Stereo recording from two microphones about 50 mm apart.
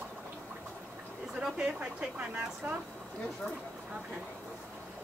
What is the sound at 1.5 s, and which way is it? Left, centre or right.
Speech, centre.